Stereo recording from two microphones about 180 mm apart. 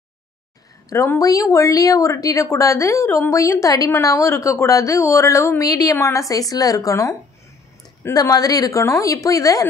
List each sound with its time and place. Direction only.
0.8 s a woman's voice: 15° left (ahead or behind)